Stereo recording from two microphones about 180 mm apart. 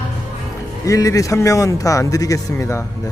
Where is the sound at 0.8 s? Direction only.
20° left (ahead or behind).